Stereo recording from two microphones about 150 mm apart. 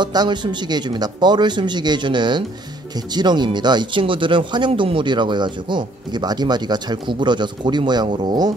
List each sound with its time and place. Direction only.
0.0 s speech: 30° right (ahead or behind)